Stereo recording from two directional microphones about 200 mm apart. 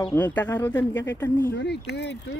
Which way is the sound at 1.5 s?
55° left (ahead or behind).